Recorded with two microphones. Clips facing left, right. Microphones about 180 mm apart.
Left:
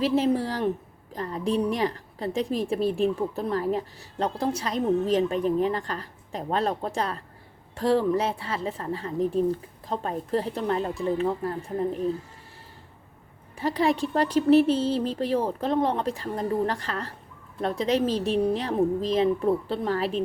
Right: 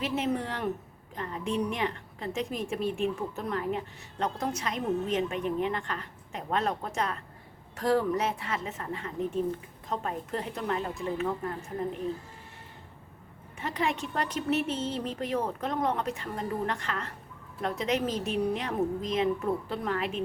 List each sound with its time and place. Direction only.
0.0 s a woman's voice: 35° left (ahead or behind)
13.6 s a woman's voice: 35° left (ahead or behind)